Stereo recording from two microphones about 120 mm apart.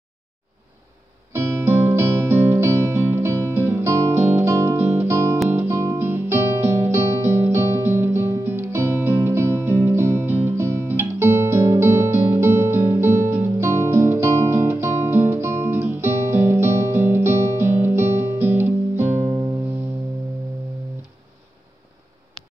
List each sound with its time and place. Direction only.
1.3 s music: 20° right (ahead or behind)